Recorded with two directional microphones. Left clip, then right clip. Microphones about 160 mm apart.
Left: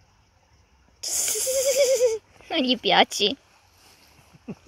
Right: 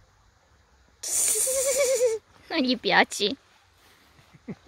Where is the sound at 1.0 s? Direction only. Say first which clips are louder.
Left 1 dB; 15° right (ahead or behind).